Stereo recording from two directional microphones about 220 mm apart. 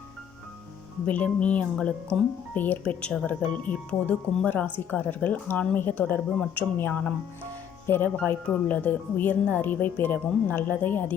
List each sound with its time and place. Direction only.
1.0 s speech: 5° left (ahead or behind)